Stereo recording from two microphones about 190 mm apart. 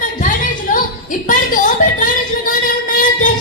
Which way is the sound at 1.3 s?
45° left (ahead or behind).